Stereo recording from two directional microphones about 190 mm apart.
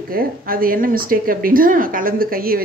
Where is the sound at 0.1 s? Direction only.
50° right (ahead or behind).